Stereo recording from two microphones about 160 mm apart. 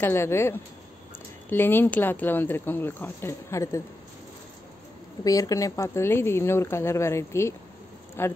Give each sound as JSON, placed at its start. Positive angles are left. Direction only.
{"t": 0.0, "sound": "speech", "side_deg": 15}
{"t": 5.2, "sound": "speech", "side_deg": 20}